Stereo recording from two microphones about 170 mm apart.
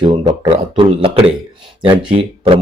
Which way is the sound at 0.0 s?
30° right (ahead or behind).